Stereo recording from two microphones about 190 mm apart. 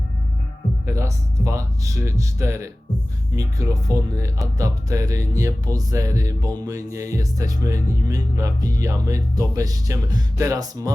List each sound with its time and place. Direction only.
0.9 s speech: 15° right (ahead or behind)